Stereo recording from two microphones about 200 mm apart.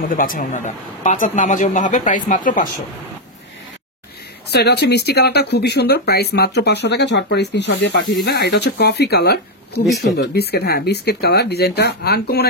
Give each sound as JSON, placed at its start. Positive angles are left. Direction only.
{"t": 0.1, "sound": "a man's voice", "side_deg": 45}
{"t": 4.5, "sound": "speech", "side_deg": 55}